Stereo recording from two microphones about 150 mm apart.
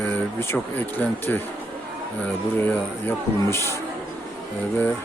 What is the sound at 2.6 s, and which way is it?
Speech, 15° left (ahead or behind).